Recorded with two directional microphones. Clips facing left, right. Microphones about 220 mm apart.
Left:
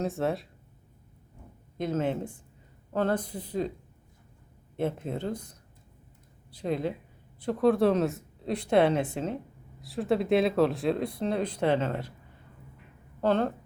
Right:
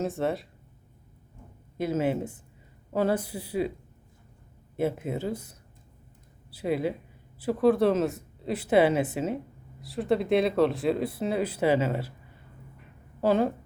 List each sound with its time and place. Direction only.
0.0 s speech: centre (ahead or behind)
1.8 s speech: 5° right (ahead or behind)
4.8 s speech: 5° right (ahead or behind)
13.2 s speech: 10° right (ahead or behind)